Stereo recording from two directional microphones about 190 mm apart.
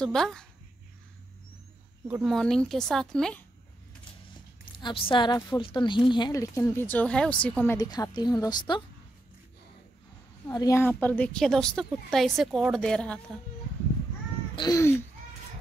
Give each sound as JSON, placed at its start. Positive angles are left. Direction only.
{"t": 0.0, "sound": "a woman's voice", "side_deg": 5}
{"t": 2.2, "sound": "a woman's voice", "side_deg": 0}
{"t": 4.7, "sound": "a woman's voice", "side_deg": 25}
{"t": 7.7, "sound": "a woman's voice", "side_deg": 20}
{"t": 10.5, "sound": "a woman's voice", "side_deg": 15}
{"t": 14.5, "sound": "speech", "side_deg": 20}